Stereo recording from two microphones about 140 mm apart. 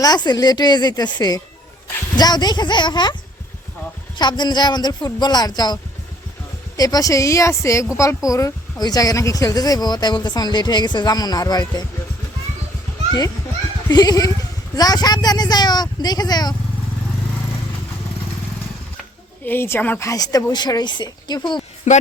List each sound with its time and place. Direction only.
0.0 s speech: 30° left (ahead or behind)
4.2 s speech: 30° left (ahead or behind)
13.8 s speech: 30° left (ahead or behind)
19.5 s speech: 15° left (ahead or behind)
20.1 s speech: 25° left (ahead or behind)
21.9 s speech: 60° left (ahead or behind)